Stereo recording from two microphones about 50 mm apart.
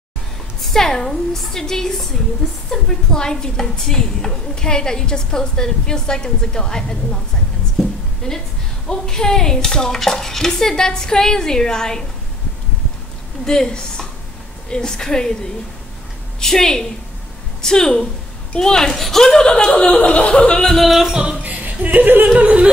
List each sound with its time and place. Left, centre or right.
0.6 s a woman's voice: centre
8.2 s a woman's voice: centre
13.5 s a woman's voice: centre
16.3 s a woman's voice: centre
19.4 s speech: centre
20.6 s yodeling: centre
21.4 s a sound: right
22.3 s speech: right